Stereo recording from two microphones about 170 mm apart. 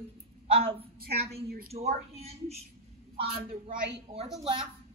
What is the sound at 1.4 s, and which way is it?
Speech, 65° right (ahead or behind).